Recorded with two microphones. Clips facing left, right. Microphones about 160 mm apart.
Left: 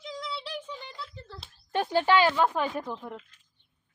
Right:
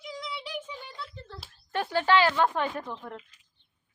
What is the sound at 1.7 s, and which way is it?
A woman's voice, 20° left (ahead or behind).